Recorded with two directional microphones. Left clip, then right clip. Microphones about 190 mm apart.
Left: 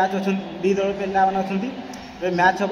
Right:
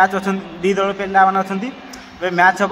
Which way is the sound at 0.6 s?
30° right (ahead or behind).